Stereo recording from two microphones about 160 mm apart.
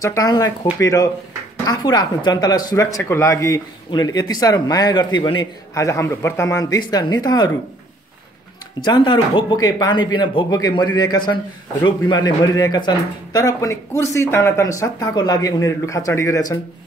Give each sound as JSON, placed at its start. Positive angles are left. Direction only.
{"t": 0.0, "sound": "speech", "side_deg": 20}
{"t": 8.8, "sound": "speech", "side_deg": 30}